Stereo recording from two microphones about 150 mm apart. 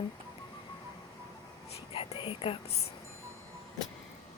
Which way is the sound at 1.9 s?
40° left (ahead or behind).